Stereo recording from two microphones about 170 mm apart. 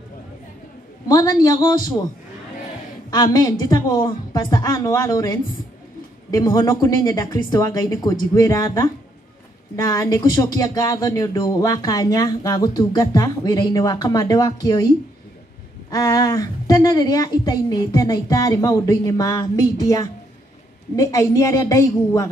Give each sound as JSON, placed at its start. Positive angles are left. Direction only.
{"t": 1.0, "sound": "speech", "side_deg": 20}
{"t": 3.1, "sound": "speech", "side_deg": 25}
{"t": 6.3, "sound": "speech", "side_deg": 20}
{"t": 9.8, "sound": "speech", "side_deg": 20}
{"t": 15.9, "sound": "speech", "side_deg": 20}